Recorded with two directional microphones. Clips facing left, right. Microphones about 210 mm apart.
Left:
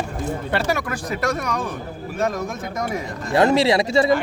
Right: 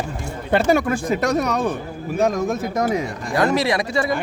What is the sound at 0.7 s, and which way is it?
Speech, 25° right (ahead or behind).